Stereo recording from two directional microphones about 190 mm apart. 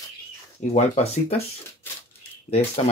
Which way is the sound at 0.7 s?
35° left (ahead or behind).